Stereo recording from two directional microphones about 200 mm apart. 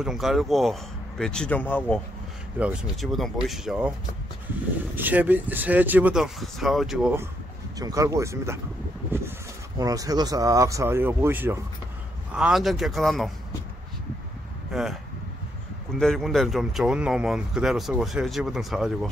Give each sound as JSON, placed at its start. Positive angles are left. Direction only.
{"t": 0.0, "sound": "speech", "side_deg": 0}
{"t": 2.6, "sound": "speech", "side_deg": -5}
{"t": 4.9, "sound": "speech", "side_deg": -10}
{"t": 7.8, "sound": "speech", "side_deg": -15}
{"t": 9.1, "sound": "a sound", "side_deg": -10}
{"t": 9.8, "sound": "speech", "side_deg": -20}
{"t": 14.7, "sound": "speech", "side_deg": 0}